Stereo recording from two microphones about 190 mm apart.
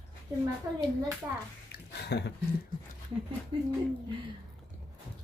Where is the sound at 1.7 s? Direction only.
60° left (ahead or behind).